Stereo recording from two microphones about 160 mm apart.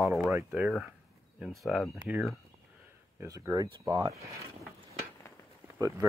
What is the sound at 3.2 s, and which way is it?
Speech, 15° right (ahead or behind).